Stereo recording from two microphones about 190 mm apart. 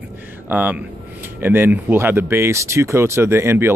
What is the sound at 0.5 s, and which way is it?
Speech, 10° right (ahead or behind).